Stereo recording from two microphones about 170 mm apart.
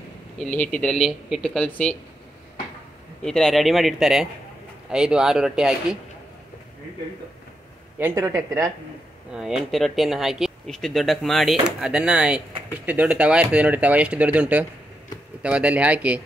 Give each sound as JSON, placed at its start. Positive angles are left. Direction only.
{"t": 0.4, "sound": "speech", "side_deg": 5}
{"t": 3.2, "sound": "speech", "side_deg": 5}
{"t": 8.0, "sound": "speech", "side_deg": -15}
{"t": 9.3, "sound": "speech", "side_deg": 0}